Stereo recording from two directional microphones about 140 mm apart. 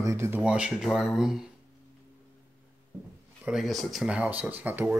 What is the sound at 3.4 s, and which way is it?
Speech, 5° right (ahead or behind).